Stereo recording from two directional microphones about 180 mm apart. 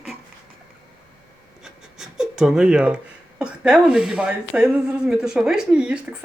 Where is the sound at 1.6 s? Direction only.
5° right (ahead or behind).